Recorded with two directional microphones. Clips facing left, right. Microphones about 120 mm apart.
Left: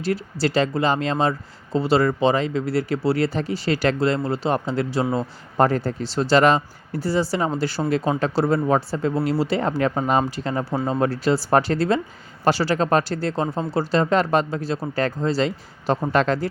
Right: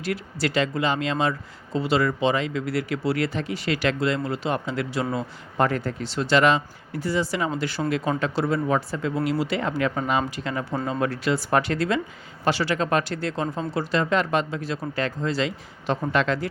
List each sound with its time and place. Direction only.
0.0 s speech: 35° left (ahead or behind)